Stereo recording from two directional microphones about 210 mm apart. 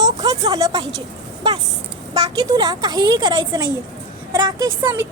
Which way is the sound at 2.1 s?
20° right (ahead or behind).